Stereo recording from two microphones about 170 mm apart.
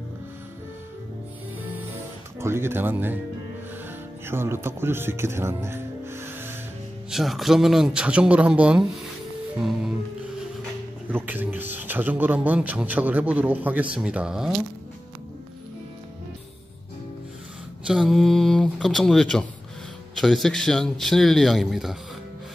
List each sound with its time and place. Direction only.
2.4 s speech: 15° right (ahead or behind)
4.3 s speech: 15° right (ahead or behind)
7.1 s speech: centre (ahead or behind)
11.1 s speech: 10° right (ahead or behind)
17.8 s speech: centre (ahead or behind)